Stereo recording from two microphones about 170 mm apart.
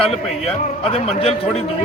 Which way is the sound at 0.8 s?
35° left (ahead or behind).